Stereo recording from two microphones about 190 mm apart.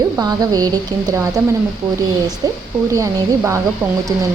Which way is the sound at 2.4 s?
20° right (ahead or behind).